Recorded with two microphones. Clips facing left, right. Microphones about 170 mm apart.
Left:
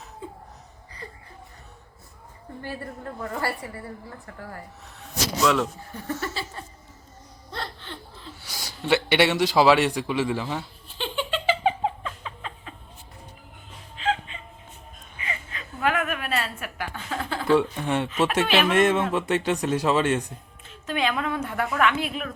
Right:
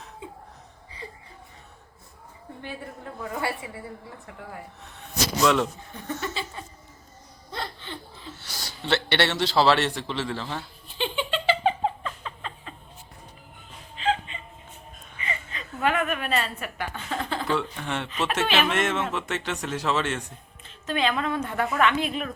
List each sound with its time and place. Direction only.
2.6 s a woman's voice: 5° right (ahead or behind)
6.1 s laughter: 25° right (ahead or behind)
7.5 s gasp: centre (ahead or behind); by 10.6 s 15° left (ahead or behind)
10.6 s a sound: centre (ahead or behind)
13.9 s music: centre (ahead or behind)
15.2 s a sound: 5° left (ahead or behind)
19.3 s a woman's voice: 15° left (ahead or behind)